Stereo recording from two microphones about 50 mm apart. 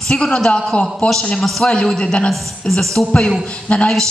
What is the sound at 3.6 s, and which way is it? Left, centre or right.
Speech, left.